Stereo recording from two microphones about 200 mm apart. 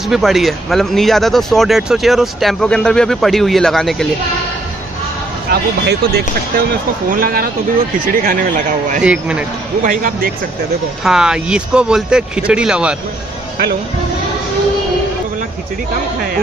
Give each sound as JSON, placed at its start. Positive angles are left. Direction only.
{"t": 0.1, "sound": "speech", "side_deg": 0}
{"t": 5.5, "sound": "speech", "side_deg": -55}
{"t": 9.0, "sound": "speech", "side_deg": -5}
{"t": 9.8, "sound": "speech", "side_deg": -45}
{"t": 11.1, "sound": "speech", "side_deg": -5}